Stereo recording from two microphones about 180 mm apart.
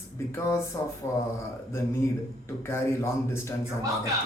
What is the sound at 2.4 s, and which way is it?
Speech, 15° left (ahead or behind).